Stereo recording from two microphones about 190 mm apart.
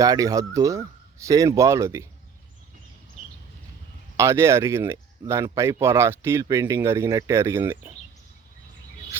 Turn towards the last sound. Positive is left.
turn(degrees=-15)  # may be behind; listen again after turning